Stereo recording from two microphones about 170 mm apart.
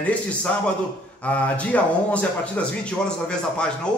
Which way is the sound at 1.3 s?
10° left (ahead or behind).